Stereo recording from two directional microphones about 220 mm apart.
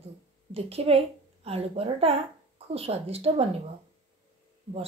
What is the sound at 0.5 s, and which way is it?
A woman's voice, 25° right (ahead or behind).